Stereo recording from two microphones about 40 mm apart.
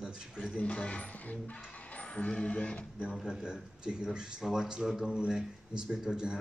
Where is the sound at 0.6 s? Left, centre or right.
Left.